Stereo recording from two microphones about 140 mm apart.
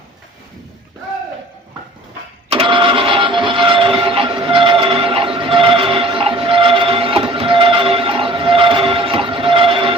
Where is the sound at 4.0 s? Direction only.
40° right (ahead or behind).